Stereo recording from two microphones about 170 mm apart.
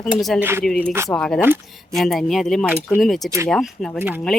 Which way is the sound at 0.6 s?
5° left (ahead or behind).